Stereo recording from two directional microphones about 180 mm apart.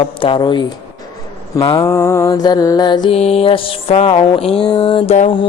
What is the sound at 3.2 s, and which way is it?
A woman's voice, 35° left (ahead or behind).